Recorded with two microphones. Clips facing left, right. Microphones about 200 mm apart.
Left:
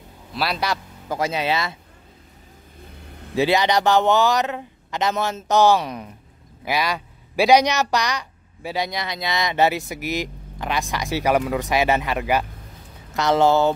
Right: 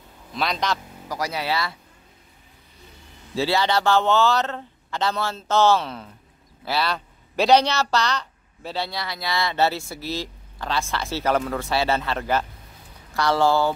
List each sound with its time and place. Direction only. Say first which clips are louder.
0.3 s a man's voice: left 1 dB; 5° left (ahead or behind)
1.0 s speech: left 5 dB; 25° left (ahead or behind)
3.3 s speech: left 3 dB; 15° left (ahead or behind)